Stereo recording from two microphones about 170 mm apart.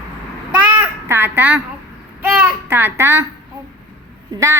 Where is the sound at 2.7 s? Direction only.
15° right (ahead or behind).